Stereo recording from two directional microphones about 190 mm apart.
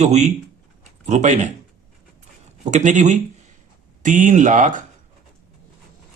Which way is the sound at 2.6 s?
40° right (ahead or behind).